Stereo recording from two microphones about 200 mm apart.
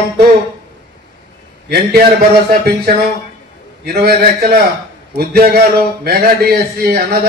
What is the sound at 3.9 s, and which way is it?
A man's voice, 50° right (ahead or behind).